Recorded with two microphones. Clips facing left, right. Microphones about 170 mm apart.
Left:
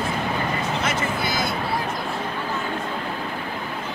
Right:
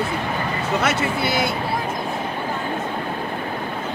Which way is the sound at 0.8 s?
65° right (ahead or behind).